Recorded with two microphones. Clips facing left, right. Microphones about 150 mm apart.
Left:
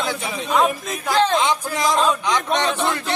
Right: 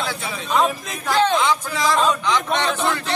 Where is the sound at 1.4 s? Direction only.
20° left (ahead or behind).